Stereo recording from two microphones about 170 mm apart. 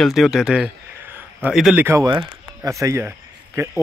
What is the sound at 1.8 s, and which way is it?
Speech, 20° right (ahead or behind).